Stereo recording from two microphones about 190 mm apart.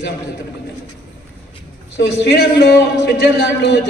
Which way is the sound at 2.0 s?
60° left (ahead or behind).